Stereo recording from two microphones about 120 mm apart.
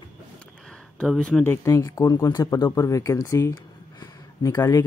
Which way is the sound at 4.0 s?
30° left (ahead or behind).